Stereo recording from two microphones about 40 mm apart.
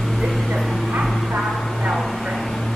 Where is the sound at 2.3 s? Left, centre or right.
Centre.